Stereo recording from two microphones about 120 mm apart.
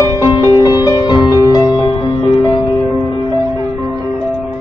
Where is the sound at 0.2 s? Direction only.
40° left (ahead or behind).